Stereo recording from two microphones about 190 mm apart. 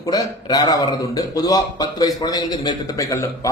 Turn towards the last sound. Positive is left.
turn(degrees=15)  # may be behind; listen again after turning